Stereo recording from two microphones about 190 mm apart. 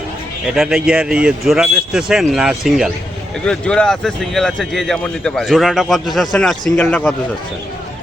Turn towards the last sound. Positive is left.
turn(degrees=10)  # may be behind; listen again after turning